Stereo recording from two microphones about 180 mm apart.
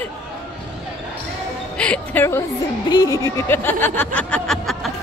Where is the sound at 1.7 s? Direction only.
5° left (ahead or behind).